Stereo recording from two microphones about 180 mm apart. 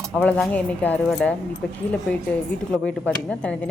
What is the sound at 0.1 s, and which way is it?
Speech, 5° left (ahead or behind).